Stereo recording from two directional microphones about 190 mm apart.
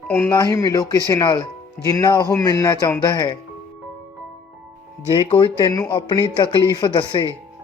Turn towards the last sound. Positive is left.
turn(degrees=25)  # may be behind; listen again after turning